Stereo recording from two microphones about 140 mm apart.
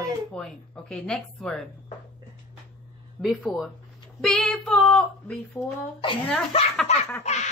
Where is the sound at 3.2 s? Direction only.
Centre (ahead or behind).